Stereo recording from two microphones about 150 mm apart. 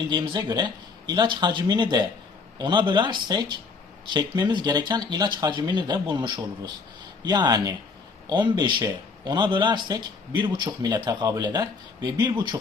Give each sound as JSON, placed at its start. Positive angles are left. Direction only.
{"t": 0.1, "sound": "speech", "side_deg": -30}